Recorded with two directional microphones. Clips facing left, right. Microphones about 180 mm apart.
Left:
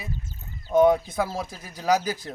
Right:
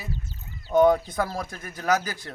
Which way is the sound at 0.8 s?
5° left (ahead or behind).